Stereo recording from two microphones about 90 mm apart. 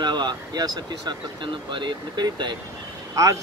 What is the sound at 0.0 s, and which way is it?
Speech, 55° right (ahead or behind).